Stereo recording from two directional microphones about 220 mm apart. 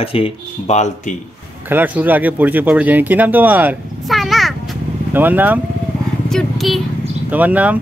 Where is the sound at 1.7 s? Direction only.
5° right (ahead or behind).